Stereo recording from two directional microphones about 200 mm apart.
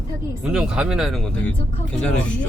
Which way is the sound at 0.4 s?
5° right (ahead or behind).